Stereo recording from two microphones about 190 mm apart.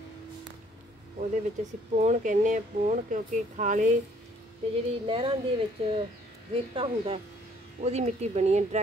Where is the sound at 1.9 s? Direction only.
40° right (ahead or behind).